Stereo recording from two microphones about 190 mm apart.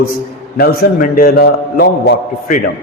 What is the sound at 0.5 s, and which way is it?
A man's voice, 50° left (ahead or behind).